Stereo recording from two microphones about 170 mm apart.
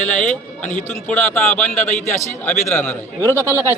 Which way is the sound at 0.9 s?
10° left (ahead or behind).